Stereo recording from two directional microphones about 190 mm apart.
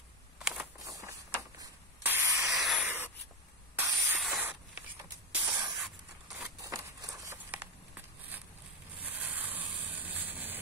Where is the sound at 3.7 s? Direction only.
10° right (ahead or behind).